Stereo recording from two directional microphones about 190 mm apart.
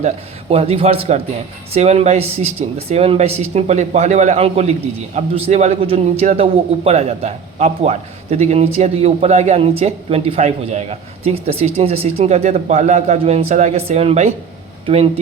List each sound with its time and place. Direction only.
0.5 s a man's voice: 30° right (ahead or behind)